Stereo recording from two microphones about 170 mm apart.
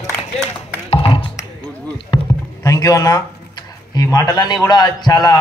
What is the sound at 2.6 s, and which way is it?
Speech, 20° left (ahead or behind).